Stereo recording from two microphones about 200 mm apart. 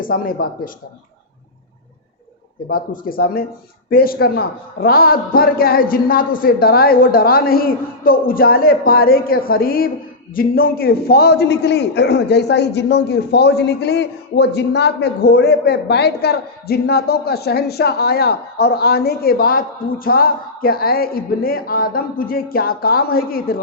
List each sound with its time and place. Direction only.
0.0 s a man's voice: 45° left (ahead or behind)
2.6 s a man's voice: 45° left (ahead or behind)